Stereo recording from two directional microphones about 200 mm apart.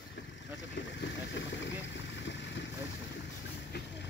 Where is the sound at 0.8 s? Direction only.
65° left (ahead or behind).